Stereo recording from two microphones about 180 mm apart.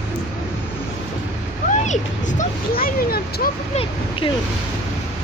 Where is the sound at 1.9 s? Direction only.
50° left (ahead or behind).